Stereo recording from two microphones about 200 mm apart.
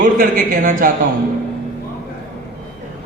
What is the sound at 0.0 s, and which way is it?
Speech, 45° right (ahead or behind).